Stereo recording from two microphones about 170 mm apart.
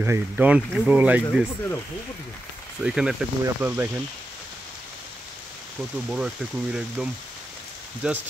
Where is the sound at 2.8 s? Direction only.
5° right (ahead or behind).